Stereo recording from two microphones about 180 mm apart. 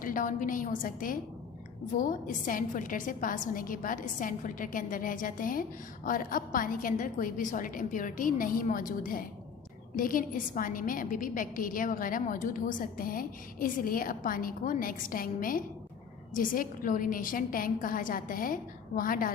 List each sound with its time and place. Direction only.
0.0 s a woman's voice: 50° left (ahead or behind)